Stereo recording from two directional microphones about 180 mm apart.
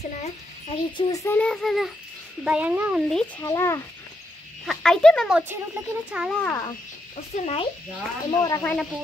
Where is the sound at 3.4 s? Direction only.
15° left (ahead or behind).